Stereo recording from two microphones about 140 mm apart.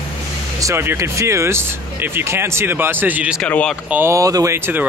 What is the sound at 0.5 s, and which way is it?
Speech, 20° right (ahead or behind).